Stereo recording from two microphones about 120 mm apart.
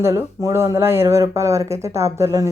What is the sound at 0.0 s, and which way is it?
Speech, 25° right (ahead or behind).